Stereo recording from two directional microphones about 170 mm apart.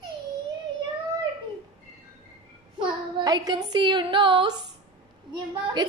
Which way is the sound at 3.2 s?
20° right (ahead or behind).